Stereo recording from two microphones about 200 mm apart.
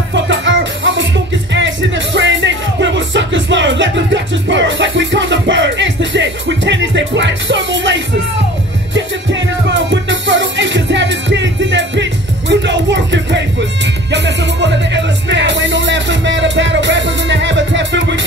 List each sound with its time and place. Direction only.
0.1 s music: 70° right (ahead or behind)